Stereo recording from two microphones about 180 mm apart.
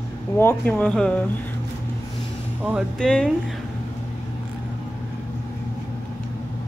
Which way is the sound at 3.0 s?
5° left (ahead or behind).